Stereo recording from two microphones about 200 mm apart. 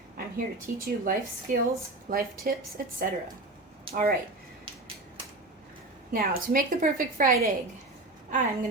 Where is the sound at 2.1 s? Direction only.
45° right (ahead or behind).